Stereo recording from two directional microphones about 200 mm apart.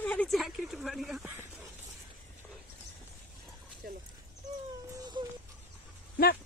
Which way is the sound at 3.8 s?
50° right (ahead or behind).